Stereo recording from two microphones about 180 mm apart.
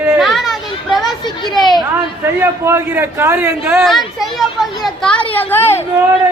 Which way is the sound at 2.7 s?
15° right (ahead or behind).